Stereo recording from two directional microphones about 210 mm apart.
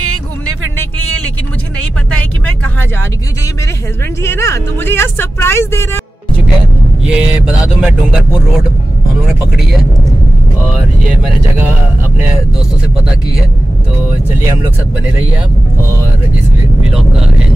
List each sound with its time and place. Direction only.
0.0 s music: 90° right
0.9 s vehicle: 90° right
1.8 s a sound: 90° right
4.2 s speech: 10° left (ahead or behind)
7.0 s speech: 5° right (ahead or behind)